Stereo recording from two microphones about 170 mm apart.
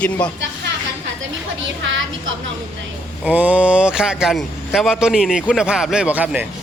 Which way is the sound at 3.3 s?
10° right (ahead or behind).